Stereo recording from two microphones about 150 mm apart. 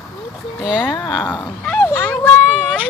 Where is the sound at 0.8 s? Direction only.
15° left (ahead or behind).